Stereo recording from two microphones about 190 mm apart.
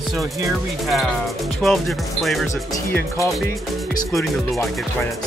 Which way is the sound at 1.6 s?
Centre (ahead or behind).